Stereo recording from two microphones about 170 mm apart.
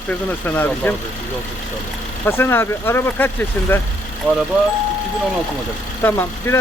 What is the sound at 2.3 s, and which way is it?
Speech, 15° left (ahead or behind).